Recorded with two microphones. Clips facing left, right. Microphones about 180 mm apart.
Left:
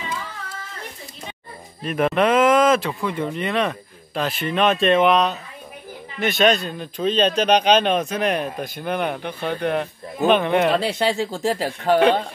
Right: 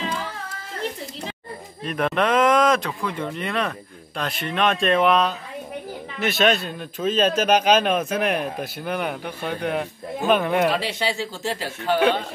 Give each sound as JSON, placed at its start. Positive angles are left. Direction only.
{"t": 1.9, "sound": "speech", "side_deg": 5}
{"t": 10.8, "sound": "a man's voice", "side_deg": 45}